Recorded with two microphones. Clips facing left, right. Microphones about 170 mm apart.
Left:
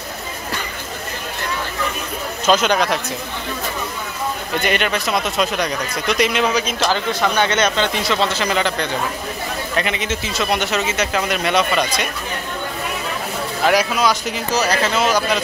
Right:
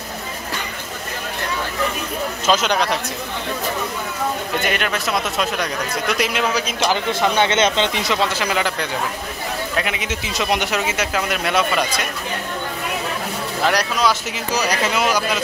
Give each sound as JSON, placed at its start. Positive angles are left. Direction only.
{"t": 2.4, "sound": "speech", "side_deg": 0}
{"t": 4.6, "sound": "speech", "side_deg": 0}
{"t": 6.8, "sound": "speech", "side_deg": -20}
{"t": 13.7, "sound": "speech", "side_deg": 5}
{"t": 14.5, "sound": "speech", "side_deg": -15}